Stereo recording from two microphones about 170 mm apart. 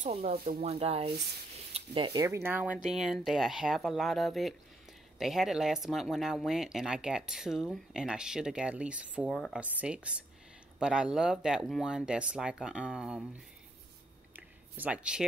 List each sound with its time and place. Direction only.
0.0 s speech: 40° right (ahead or behind)
2.2 s speech: 15° right (ahead or behind)
9.3 s speech: 5° left (ahead or behind)
9.6 s speech: 5° right (ahead or behind)
14.3 s a sound: 10° right (ahead or behind)